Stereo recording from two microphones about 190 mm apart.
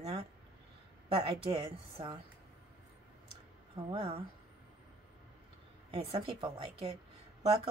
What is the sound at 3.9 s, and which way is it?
Speech, 30° right (ahead or behind).